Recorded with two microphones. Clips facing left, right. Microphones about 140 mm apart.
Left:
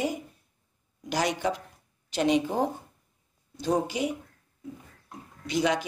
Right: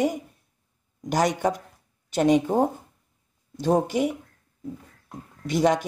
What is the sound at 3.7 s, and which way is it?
Speech, 50° right (ahead or behind).